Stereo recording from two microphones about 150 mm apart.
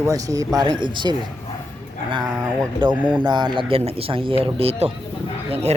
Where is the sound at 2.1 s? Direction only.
25° right (ahead or behind).